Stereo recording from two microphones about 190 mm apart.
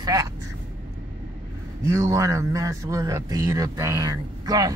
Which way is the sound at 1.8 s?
15° right (ahead or behind).